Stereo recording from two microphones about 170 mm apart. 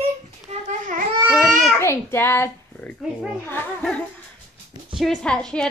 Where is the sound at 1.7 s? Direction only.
15° left (ahead or behind).